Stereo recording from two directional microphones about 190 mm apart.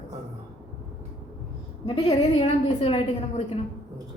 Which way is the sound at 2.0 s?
30° left (ahead or behind).